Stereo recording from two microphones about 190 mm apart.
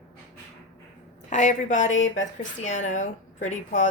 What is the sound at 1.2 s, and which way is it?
A woman's voice, 40° left (ahead or behind).